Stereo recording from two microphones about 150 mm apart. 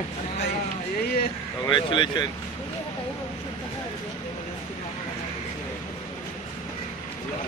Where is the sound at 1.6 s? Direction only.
30° left (ahead or behind).